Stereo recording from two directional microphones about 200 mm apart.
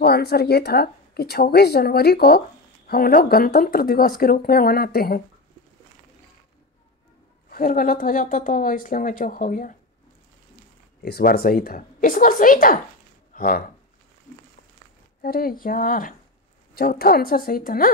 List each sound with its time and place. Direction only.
0.0 s a woman's voice: 50° left (ahead or behind)
7.4 s a woman's voice: 45° left (ahead or behind)
11.0 s a woman's voice: 50° left (ahead or behind)
15.2 s a woman's voice: 50° left (ahead or behind)